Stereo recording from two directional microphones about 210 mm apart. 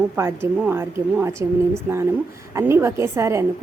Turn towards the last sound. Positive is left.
turn(degrees=-15)  # may be behind; listen again after turning